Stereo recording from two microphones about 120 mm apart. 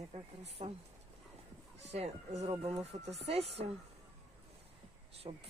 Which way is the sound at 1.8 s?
65° right (ahead or behind).